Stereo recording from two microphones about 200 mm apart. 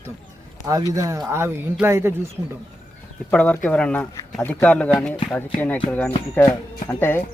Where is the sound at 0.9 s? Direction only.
15° right (ahead or behind).